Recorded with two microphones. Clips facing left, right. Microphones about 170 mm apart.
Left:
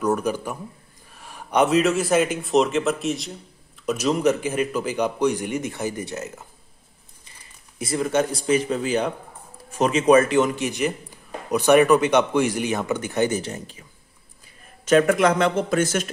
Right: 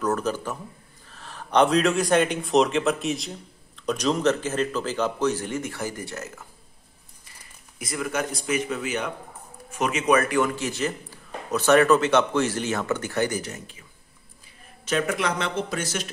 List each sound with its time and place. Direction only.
0.0 s speech: 10° left (ahead or behind)
7.8 s speech: 30° left (ahead or behind)
14.9 s a man's voice: 50° left (ahead or behind)